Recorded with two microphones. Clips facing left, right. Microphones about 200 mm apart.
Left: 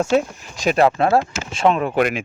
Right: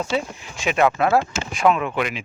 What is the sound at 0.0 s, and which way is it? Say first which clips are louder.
Speech: left 6 dB; 45° left (ahead or behind).